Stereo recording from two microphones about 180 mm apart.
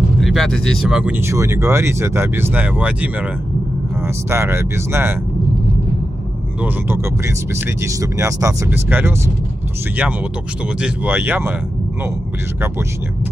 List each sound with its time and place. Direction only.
0.2 s speech: centre (ahead or behind)
4.3 s speech: 15° right (ahead or behind)
6.6 s speech: 15° right (ahead or behind)
10.8 s speech: 10° right (ahead or behind)